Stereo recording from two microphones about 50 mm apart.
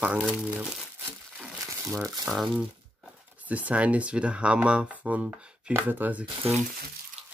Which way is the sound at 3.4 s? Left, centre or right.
Right.